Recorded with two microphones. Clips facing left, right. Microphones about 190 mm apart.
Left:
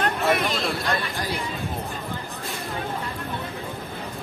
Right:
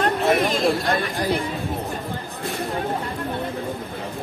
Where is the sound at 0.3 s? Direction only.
45° right (ahead or behind).